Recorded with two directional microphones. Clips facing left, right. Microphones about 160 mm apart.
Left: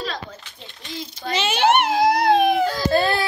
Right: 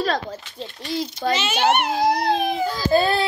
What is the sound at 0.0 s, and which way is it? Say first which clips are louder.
Speech: right 7 dB; 45° right (ahead or behind).